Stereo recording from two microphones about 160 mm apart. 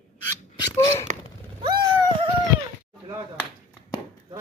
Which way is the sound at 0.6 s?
20° left (ahead or behind).